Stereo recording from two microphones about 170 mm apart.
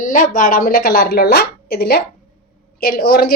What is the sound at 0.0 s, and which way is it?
A woman's voice, 50° left (ahead or behind).